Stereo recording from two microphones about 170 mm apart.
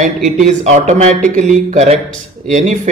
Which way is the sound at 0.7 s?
45° right (ahead or behind).